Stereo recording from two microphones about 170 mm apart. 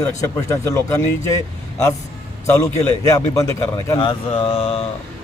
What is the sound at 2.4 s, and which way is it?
A man's voice, 15° left (ahead or behind).